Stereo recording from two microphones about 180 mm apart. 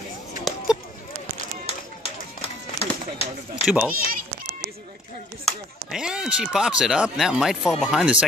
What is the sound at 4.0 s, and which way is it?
Bleat, 50° right (ahead or behind).